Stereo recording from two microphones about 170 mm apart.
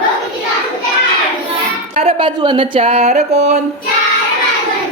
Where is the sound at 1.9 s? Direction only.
35° right (ahead or behind).